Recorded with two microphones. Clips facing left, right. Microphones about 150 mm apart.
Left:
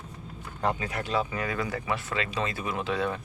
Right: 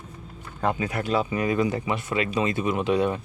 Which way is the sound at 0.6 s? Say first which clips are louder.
Right 4 dB; 20° right (ahead or behind).